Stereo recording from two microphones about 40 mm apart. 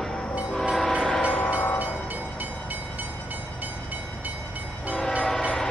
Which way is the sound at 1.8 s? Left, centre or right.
Right.